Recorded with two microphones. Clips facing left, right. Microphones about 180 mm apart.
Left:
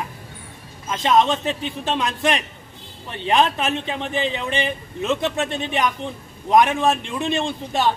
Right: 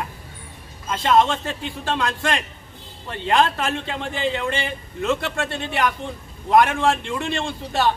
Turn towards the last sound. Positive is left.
turn(degrees=20)  # may be behind; listen again after turning